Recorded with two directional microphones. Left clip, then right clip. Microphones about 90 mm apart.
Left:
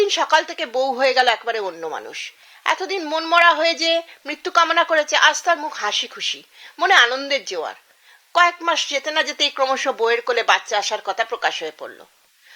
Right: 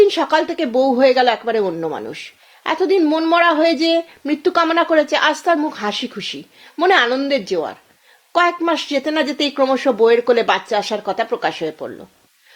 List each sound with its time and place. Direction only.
0.0 s a woman's voice: 30° left (ahead or behind)